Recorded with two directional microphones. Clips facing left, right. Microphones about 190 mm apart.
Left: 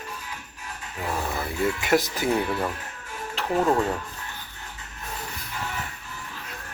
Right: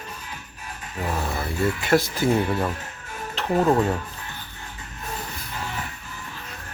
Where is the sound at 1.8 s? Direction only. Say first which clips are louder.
Right 4 dB; 15° left (ahead or behind).